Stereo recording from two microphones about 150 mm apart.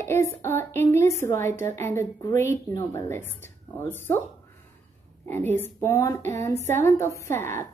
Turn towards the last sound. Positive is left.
turn(degrees=15)  # may be behind; listen again after turning